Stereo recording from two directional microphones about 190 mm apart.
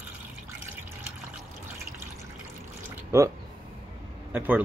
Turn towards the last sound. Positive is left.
turn(degrees=-10)  # may be behind; listen again after turning